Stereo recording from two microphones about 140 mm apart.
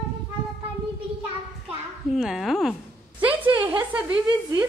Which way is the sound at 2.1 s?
5° right (ahead or behind).